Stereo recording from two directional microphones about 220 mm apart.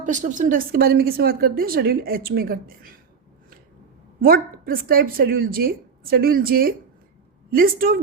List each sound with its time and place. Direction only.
0.0 s a woman's voice: 35° right (ahead or behind)
4.2 s speech: 40° right (ahead or behind)